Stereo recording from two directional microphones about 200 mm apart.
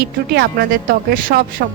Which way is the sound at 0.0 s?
50° right (ahead or behind).